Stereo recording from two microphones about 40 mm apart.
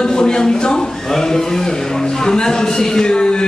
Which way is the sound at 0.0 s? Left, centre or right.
Centre.